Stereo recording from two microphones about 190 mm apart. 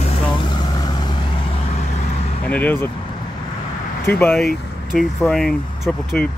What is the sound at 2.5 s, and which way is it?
Speech, 10° left (ahead or behind).